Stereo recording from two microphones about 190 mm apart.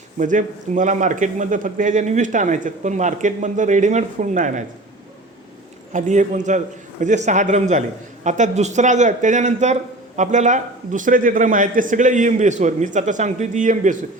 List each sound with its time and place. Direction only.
0.2 s a man's voice: 40° right (ahead or behind)
5.9 s a man's voice: 40° right (ahead or behind)